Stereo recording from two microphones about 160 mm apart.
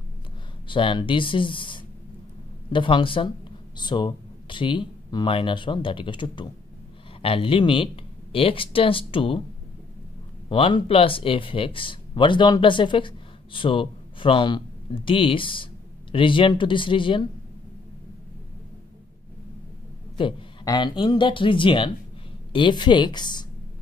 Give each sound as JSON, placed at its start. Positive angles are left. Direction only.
{"t": 0.7, "sound": "speech", "side_deg": 30}
{"t": 10.5, "sound": "speech", "side_deg": 35}
{"t": 20.2, "sound": "a man's voice", "side_deg": 30}